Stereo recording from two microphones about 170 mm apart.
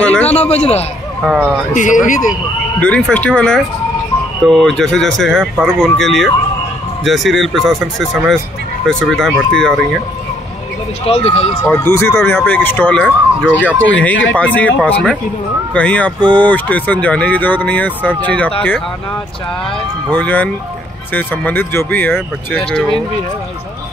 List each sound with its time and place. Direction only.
0.0 s a sound: 10° left (ahead or behind)
0.3 s a man's voice: 40° left (ahead or behind)
1.2 s speech: 5° right (ahead or behind)
1.7 s speech: 50° left (ahead or behind)
2.8 s speech: 5° left (ahead or behind)
11.1 s a man's voice: 35° left (ahead or behind)
11.6 s speech: 10° left (ahead or behind)
20.1 s speech: 10° left (ahead or behind)